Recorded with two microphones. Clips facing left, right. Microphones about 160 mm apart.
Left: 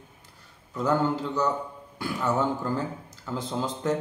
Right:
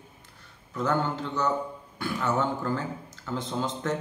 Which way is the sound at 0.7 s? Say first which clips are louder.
Left 3 dB; 10° left (ahead or behind).